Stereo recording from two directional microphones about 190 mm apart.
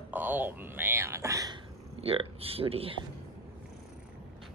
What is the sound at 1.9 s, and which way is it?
Speech, 30° right (ahead or behind).